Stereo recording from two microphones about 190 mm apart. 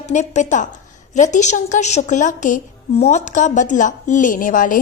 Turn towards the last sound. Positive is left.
turn(degrees=45)  # may be behind; listen again after turning